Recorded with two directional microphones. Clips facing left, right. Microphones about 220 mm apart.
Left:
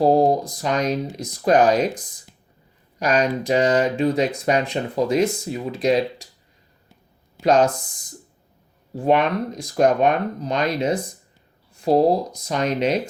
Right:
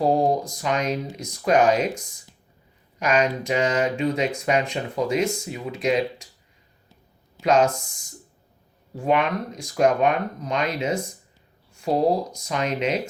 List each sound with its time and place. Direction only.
0.0 s speech: 35° left (ahead or behind)
3.0 s speech: 35° left (ahead or behind)
7.4 s speech: 35° left (ahead or behind)
9.0 s speech: 35° left (ahead or behind)